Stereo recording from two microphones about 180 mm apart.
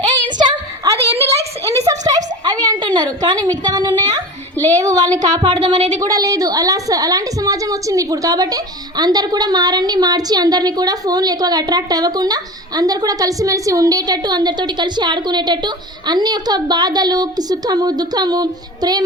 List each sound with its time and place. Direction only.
0.3 s a sound: 25° right (ahead or behind)
4.8 s a woman's voice: 20° right (ahead or behind)
5.5 s speech: 40° right (ahead or behind)
6.0 s a woman's voice: 20° right (ahead or behind)